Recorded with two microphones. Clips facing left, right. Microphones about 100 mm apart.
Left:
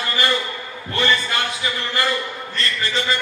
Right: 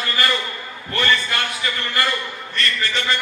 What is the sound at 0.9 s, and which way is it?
A man's voice, 20° left (ahead or behind).